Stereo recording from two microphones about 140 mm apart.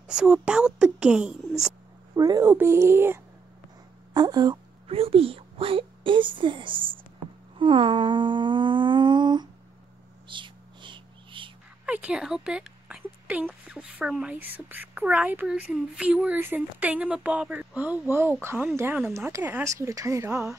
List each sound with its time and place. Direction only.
0.1 s speech: 5° right (ahead or behind)
2.1 s a woman's voice: 25° right (ahead or behind)
2.4 s speech: 15° right (ahead or behind)
4.1 s a woman's voice: 30° right (ahead or behind)
4.8 s a woman's voice: 45° right (ahead or behind)
7.5 s a sound: 35° right (ahead or behind)
11.8 s a woman's voice: 10° right (ahead or behind)